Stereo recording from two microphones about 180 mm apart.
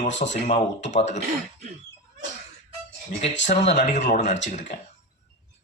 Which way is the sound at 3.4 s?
40° left (ahead or behind).